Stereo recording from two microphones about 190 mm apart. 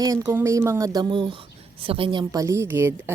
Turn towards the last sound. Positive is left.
turn(degrees=-10)  # may be behind; listen again after turning